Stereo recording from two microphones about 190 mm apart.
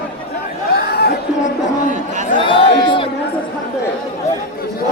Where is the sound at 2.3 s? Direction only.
25° left (ahead or behind).